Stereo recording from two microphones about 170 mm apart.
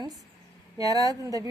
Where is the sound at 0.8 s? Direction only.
20° right (ahead or behind).